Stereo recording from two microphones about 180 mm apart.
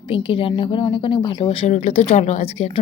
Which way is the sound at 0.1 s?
30° left (ahead or behind).